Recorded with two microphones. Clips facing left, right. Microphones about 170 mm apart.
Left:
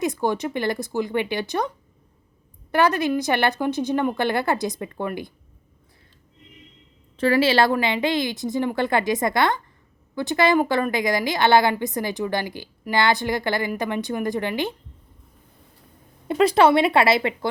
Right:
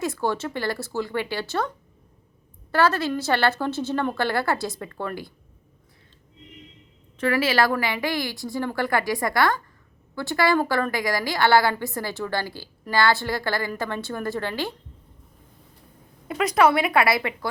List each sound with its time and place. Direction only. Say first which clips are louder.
0.0 s a woman's voice: left 3 dB; 15° left (ahead or behind)
2.7 s a woman's voice: left 2 dB; 20° left (ahead or behind)
7.2 s a woman's voice: left 3 dB; 30° left (ahead or behind)
16.3 s a woman's voice: left 3 dB; 30° left (ahead or behind)